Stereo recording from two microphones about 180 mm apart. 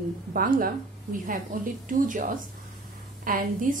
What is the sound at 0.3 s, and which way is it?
A woman's voice, 55° right (ahead or behind).